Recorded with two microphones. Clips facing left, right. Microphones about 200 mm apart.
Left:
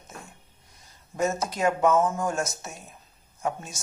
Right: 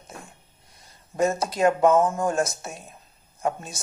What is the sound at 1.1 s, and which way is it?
Speech, 30° right (ahead or behind).